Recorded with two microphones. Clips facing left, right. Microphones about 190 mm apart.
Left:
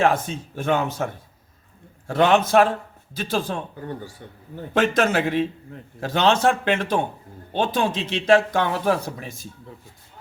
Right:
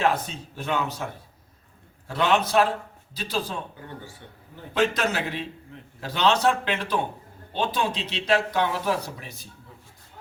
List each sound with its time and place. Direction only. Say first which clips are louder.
0.0 s speech: left 4 dB; 50° left (ahead or behind)
2.0 s speech: left 5 dB; 50° left (ahead or behind)